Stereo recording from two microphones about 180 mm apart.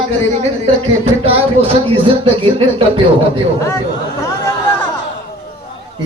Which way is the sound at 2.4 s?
30° right (ahead or behind).